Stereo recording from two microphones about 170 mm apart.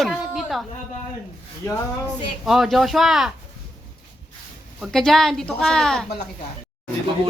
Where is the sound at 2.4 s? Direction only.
Centre (ahead or behind).